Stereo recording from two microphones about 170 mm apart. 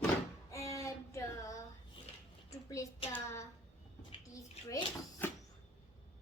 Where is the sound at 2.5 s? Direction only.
20° left (ahead or behind).